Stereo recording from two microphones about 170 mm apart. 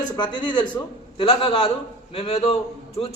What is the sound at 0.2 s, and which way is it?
A man's voice, 25° left (ahead or behind).